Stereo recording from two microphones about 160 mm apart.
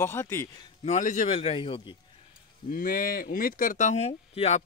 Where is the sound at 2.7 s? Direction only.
65° left (ahead or behind).